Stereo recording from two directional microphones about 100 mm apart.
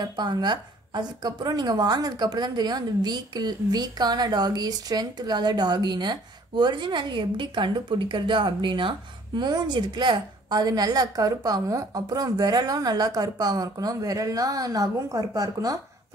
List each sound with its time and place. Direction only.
0.0 s speech: 45° right (ahead or behind)